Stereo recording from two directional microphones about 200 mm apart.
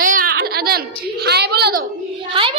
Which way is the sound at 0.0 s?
45° right (ahead or behind).